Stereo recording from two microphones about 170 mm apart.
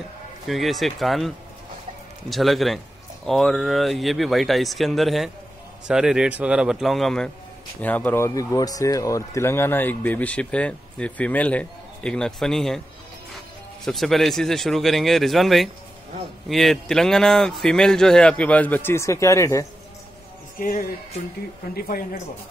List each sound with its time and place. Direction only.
0.5 s speech: centre (ahead or behind)
13.8 s speech: centre (ahead or behind); by 19.6 s 15° left (ahead or behind)
20.5 s a man's voice: 55° left (ahead or behind)